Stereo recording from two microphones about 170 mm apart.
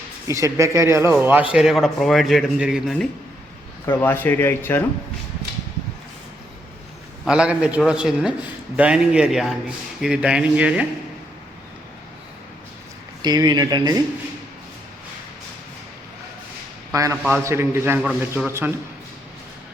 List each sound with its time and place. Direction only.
0.3 s speech: 20° right (ahead or behind)
1.5 s a man's voice: centre (ahead or behind)
4.0 s speech: 10° left (ahead or behind)
7.3 s a man's voice: 5° right (ahead or behind)
13.2 s speech: 25° right (ahead or behind)
16.9 s speech: 20° right (ahead or behind)
18.0 s a man's voice: centre (ahead or behind)
18.4 s speech: 15° right (ahead or behind)